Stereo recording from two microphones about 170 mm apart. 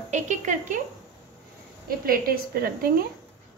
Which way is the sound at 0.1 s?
45° right (ahead or behind).